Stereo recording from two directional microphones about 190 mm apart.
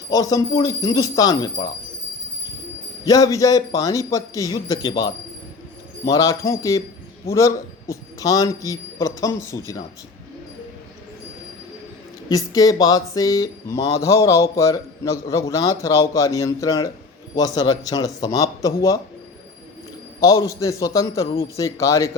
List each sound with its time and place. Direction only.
0.1 s speech: 20° left (ahead or behind)
3.0 s speech: 20° left (ahead or behind)
12.3 s speech: 20° left (ahead or behind)
20.1 s speech: 15° left (ahead or behind)